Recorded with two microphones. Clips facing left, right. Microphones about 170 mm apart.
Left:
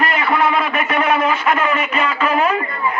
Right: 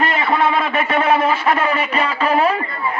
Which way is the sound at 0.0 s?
25° right (ahead or behind).